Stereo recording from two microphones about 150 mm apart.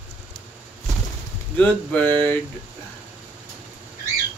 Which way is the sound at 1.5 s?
10° left (ahead or behind).